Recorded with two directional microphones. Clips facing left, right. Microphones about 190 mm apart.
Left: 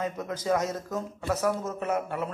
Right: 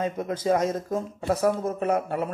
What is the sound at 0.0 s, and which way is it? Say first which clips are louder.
Speech: right 4 dB; 25° right (ahead or behind).